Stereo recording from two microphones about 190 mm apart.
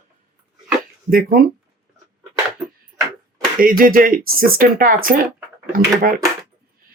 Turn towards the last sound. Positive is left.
turn(degrees=-50)  # may be behind; listen again after turning